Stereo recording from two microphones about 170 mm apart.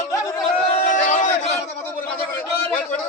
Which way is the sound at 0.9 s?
45° left (ahead or behind).